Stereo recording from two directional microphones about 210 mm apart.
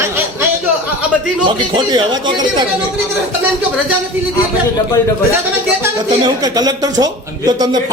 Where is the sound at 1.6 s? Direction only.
20° right (ahead or behind).